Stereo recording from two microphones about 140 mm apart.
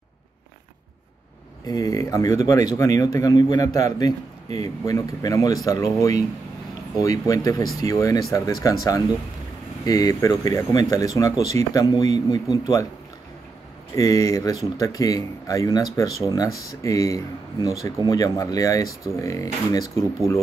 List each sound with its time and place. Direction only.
1.7 s speech: 25° left (ahead or behind)
9.8 s speech: 25° left (ahead or behind)
13.9 s speech: 25° left (ahead or behind)